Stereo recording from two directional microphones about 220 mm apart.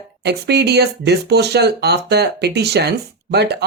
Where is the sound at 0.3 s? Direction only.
50° right (ahead or behind).